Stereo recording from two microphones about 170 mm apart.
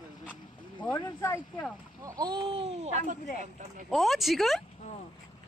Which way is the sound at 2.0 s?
20° right (ahead or behind).